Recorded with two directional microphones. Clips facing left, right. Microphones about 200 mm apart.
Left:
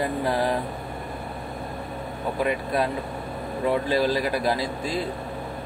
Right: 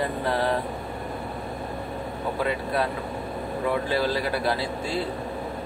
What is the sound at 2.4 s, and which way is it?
A man's voice, 15° left (ahead or behind).